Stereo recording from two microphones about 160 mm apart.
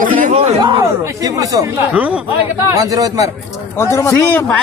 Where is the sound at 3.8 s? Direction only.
20° left (ahead or behind).